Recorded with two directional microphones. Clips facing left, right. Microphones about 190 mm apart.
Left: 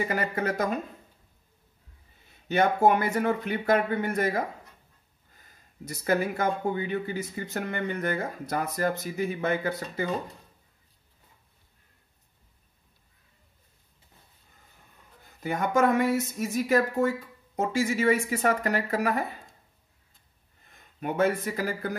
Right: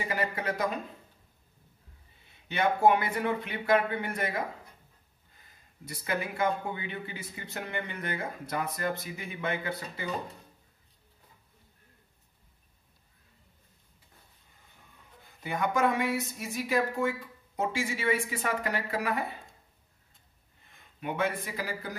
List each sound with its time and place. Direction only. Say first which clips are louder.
0.1 s speech: left 3 dB; 45° left (ahead or behind)
2.4 s speech: left 3 dB; 45° left (ahead or behind)
5.9 s speech: left 7 dB; 45° left (ahead or behind)
15.4 s speech: left 4 dB; 45° left (ahead or behind)
21.0 s speech: left 6 dB; 45° left (ahead or behind)